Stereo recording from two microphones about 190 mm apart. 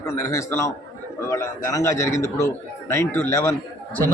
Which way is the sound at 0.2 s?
15° left (ahead or behind).